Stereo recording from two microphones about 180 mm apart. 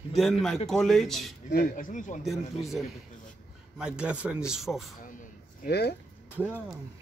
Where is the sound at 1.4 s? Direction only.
55° left (ahead or behind).